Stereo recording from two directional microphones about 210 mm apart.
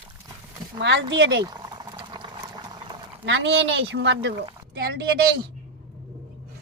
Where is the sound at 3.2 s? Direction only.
60° right (ahead or behind).